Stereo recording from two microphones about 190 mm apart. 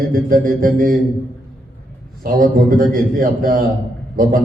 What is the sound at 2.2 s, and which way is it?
A man's voice, 50° right (ahead or behind).